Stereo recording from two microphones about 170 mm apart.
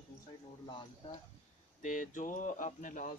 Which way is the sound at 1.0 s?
30° left (ahead or behind).